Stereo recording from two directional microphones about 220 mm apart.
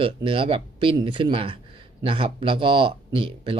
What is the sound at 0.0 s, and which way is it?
Speech, 25° right (ahead or behind).